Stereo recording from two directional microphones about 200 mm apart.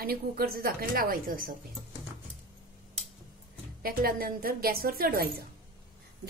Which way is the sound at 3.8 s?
45° right (ahead or behind).